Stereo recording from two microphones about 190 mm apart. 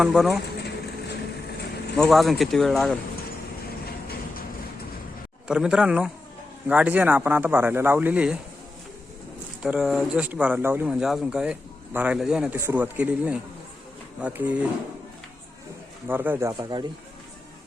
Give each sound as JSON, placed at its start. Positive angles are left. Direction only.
{"t": 0.0, "sound": "speech", "side_deg": 0}
{"t": 0.6, "sound": "bee", "side_deg": 60}
{"t": 2.0, "sound": "speech", "side_deg": 0}
{"t": 3.8, "sound": "train", "side_deg": 55}
{"t": 5.5, "sound": "speech", "side_deg": -5}
{"t": 9.6, "sound": "speech", "side_deg": 0}
{"t": 16.0, "sound": "speech", "side_deg": -10}